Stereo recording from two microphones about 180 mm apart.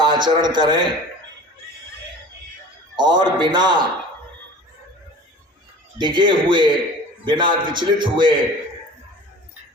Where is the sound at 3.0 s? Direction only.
25° right (ahead or behind).